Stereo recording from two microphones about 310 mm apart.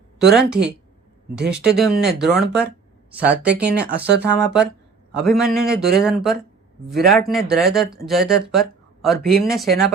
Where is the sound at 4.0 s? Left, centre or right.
Right.